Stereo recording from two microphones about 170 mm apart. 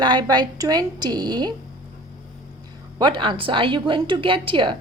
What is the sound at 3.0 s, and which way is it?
A woman's voice, 30° right (ahead or behind).